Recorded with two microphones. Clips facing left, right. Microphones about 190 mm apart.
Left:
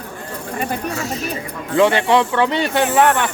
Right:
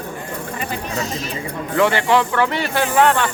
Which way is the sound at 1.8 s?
20° left (ahead or behind).